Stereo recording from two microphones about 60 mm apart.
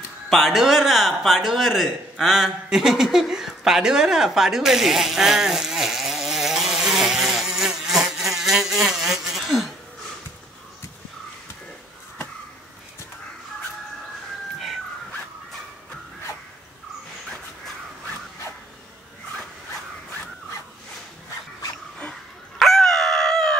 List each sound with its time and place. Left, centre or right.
0.3 s speech: centre
22.6 s dog: centre